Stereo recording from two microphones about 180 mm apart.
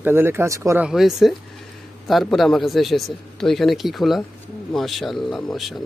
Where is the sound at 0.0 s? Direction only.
15° right (ahead or behind).